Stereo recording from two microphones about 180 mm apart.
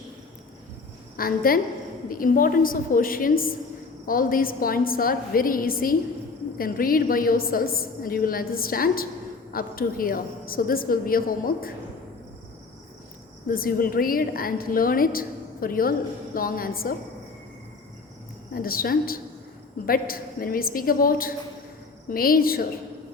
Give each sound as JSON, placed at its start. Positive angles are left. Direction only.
{"t": 1.1, "sound": "a woman's voice", "side_deg": 55}
{"t": 13.5, "sound": "a woman's voice", "side_deg": 55}
{"t": 18.5, "sound": "a woman's voice", "side_deg": 55}